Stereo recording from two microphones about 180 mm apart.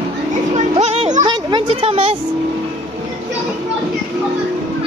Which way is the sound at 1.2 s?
25° right (ahead or behind).